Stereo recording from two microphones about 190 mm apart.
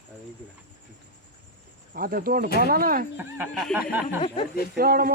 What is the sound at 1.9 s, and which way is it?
Speech, 50° right (ahead or behind).